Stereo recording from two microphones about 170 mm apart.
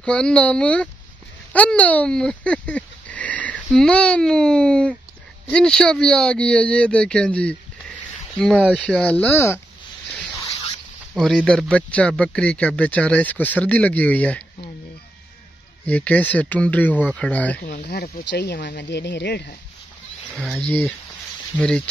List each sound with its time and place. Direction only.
0.0 s speech: 5° left (ahead or behind)
8.5 s speech: 5° left (ahead or behind)
11.1 s speech: 5° left (ahead or behind)
15.8 s speech: 10° left (ahead or behind)
17.6 s speech: 70° left (ahead or behind)
20.4 s speech: 5° left (ahead or behind)